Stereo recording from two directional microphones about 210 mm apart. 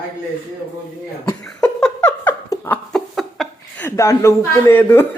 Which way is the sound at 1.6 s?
5° left (ahead or behind).